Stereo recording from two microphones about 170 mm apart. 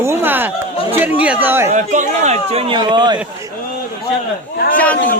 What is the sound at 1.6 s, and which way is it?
Speech, 45° right (ahead or behind).